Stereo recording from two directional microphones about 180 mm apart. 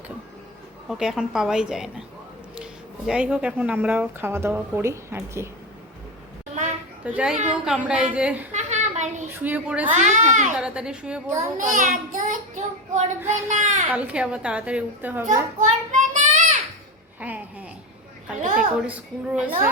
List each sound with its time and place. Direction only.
0.9 s a woman's voice: centre (ahead or behind)
3.1 s a woman's voice: 5° right (ahead or behind)
6.5 s a sound: 45° right (ahead or behind)
7.0 s a woman's voice: 5° right (ahead or behind)
8.5 s a sound: 40° right (ahead or behind)
9.4 s a woman's voice: 10° right (ahead or behind)
9.9 s a child's voice: 40° right (ahead or behind)
10.6 s a woman's voice: 5° right (ahead or behind)
11.5 s a child's voice: 45° right (ahead or behind)
13.9 s a woman's voice: 5° right (ahead or behind)
15.3 s child singing: 45° right (ahead or behind)
17.2 s a sound: 10° right (ahead or behind)
18.4 s a sound: 45° right (ahead or behind)
18.9 s a woman's voice: 10° right (ahead or behind)